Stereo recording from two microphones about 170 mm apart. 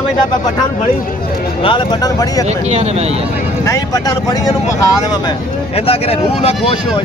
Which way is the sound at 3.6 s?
20° left (ahead or behind).